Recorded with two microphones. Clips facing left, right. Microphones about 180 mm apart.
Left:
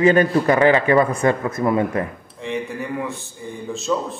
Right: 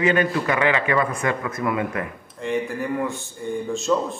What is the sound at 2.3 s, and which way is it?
A man's voice, centre (ahead or behind).